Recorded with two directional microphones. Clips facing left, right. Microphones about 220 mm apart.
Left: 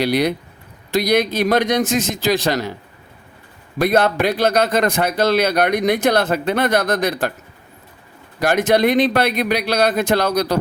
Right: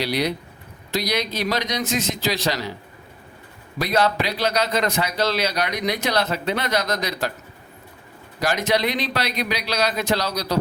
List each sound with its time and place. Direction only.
0.0 s speech: 50° left (ahead or behind)
3.8 s speech: 55° left (ahead or behind)
8.4 s speech: 50° left (ahead or behind)